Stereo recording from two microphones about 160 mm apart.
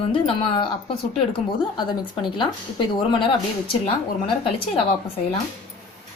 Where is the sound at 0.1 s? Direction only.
30° left (ahead or behind).